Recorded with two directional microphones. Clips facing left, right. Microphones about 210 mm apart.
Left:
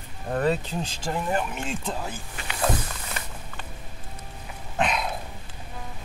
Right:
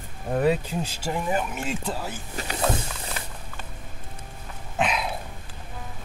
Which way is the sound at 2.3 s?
40° right (ahead or behind).